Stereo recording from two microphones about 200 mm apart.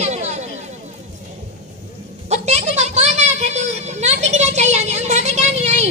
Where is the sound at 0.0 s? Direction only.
35° right (ahead or behind).